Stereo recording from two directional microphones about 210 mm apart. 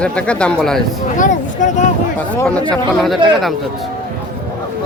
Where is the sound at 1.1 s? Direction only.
35° left (ahead or behind).